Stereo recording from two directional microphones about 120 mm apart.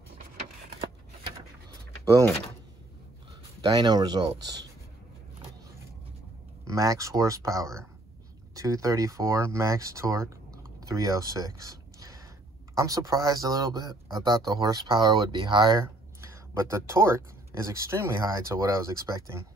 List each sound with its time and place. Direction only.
3.6 s speech: 35° right (ahead or behind)
6.7 s speech: 30° right (ahead or behind)
15.8 s speech: 25° right (ahead or behind)